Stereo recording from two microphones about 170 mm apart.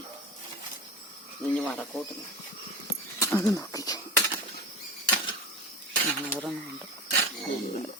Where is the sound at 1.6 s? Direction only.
5° left (ahead or behind).